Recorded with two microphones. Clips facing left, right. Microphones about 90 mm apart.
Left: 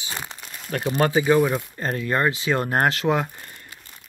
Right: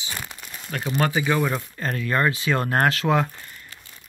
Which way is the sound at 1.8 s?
25° left (ahead or behind).